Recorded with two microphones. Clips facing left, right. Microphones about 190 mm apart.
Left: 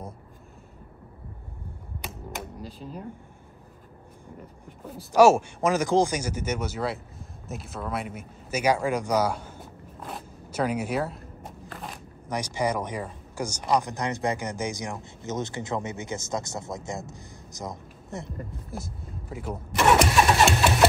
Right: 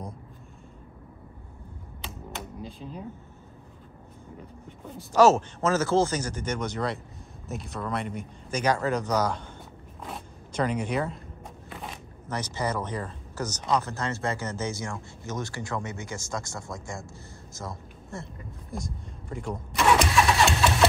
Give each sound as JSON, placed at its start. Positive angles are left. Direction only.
{"t": 2.0, "sound": "typewriter", "side_deg": 5}
{"t": 5.1, "sound": "speech", "side_deg": 10}
{"t": 11.7, "sound": "a sound", "side_deg": 0}
{"t": 12.3, "sound": "speech", "side_deg": 10}
{"t": 18.7, "sound": "speech", "side_deg": 5}
{"t": 20.0, "sound": "engine starting", "side_deg": 20}